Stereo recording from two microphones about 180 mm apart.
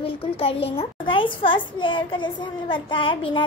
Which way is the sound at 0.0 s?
30° left (ahead or behind).